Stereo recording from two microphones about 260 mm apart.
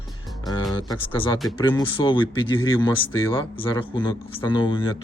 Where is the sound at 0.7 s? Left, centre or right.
Centre.